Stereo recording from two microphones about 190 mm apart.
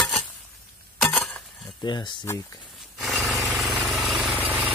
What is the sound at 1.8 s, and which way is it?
Speech, 25° left (ahead or behind).